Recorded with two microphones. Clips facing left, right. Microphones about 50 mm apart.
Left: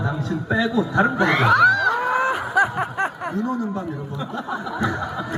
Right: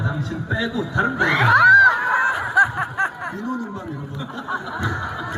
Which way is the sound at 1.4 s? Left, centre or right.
Centre.